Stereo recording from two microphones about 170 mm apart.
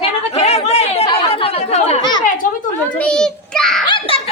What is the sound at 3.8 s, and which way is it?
Speech, 30° left (ahead or behind).